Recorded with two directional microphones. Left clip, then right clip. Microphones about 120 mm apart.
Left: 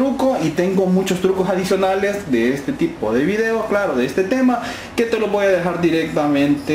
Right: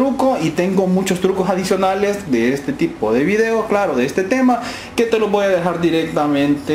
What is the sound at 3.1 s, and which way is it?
Speech, 15° right (ahead or behind).